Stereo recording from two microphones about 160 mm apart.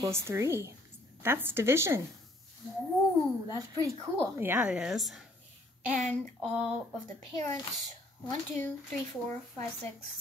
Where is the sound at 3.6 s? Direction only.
15° right (ahead or behind); by 5.2 s centre (ahead or behind).